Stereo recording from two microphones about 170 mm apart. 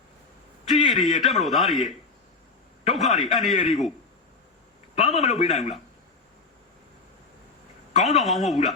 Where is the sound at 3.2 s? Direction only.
Centre (ahead or behind).